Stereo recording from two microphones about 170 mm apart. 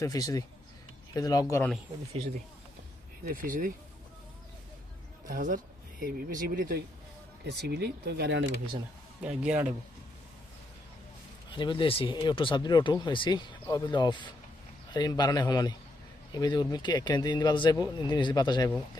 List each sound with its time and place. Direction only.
0.0 s speech: 20° left (ahead or behind)
3.2 s speech: 55° right (ahead or behind)
5.3 s speech: 50° right (ahead or behind)
7.4 s speech: 75° right (ahead or behind)
9.2 s speech: 10° right (ahead or behind)
11.5 s speech: 30° left (ahead or behind)